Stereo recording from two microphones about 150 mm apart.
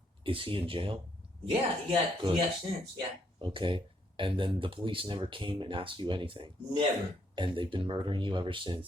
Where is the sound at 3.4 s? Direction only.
35° right (ahead or behind).